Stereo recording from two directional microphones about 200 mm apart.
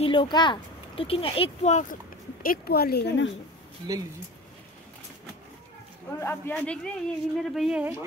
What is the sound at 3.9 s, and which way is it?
Speech, 20° right (ahead or behind).